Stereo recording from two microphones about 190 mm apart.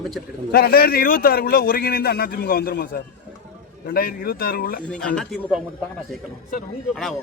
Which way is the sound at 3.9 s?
50° left (ahead or behind).